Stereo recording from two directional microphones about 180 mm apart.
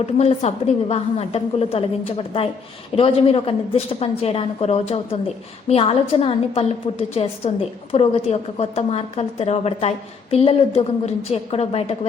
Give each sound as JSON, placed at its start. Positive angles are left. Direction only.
{"t": 0.0, "sound": "a woman's voice", "side_deg": 35}